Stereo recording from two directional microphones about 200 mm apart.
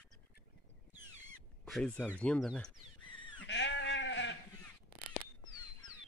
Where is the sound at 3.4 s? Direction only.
60° left (ahead or behind).